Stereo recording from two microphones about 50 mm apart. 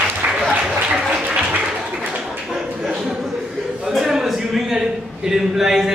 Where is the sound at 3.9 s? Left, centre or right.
Centre.